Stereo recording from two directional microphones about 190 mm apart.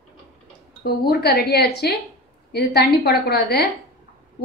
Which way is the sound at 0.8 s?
55° left (ahead or behind).